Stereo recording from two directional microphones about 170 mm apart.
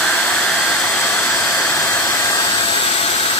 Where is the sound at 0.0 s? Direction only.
5° left (ahead or behind).